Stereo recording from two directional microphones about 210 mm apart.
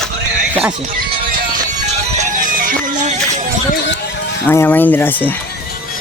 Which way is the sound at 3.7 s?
55° left (ahead or behind).